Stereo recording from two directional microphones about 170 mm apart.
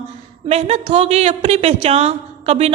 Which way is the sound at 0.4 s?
40° right (ahead or behind).